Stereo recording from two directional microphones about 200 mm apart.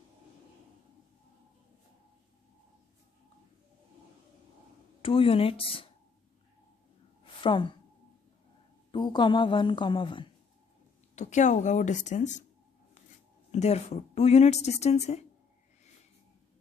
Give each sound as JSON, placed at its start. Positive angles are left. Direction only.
{"t": 5.0, "sound": "a woman's voice", "side_deg": 25}
{"t": 7.4, "sound": "a woman's voice", "side_deg": 25}
{"t": 8.9, "sound": "a woman's voice", "side_deg": 25}
{"t": 11.1, "sound": "speech", "side_deg": 35}
{"t": 13.5, "sound": "speech", "side_deg": 35}